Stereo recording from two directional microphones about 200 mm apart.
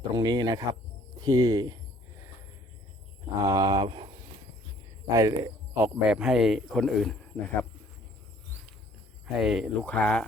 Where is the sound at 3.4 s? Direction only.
20° right (ahead or behind).